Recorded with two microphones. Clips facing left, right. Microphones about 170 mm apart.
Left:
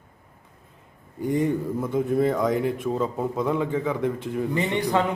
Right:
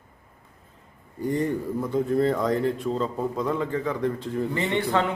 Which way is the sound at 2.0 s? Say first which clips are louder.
Left 1 dB; 5° left (ahead or behind).